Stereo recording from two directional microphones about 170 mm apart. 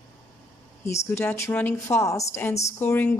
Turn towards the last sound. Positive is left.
turn(degrees=10)  # may be behind; listen again after turning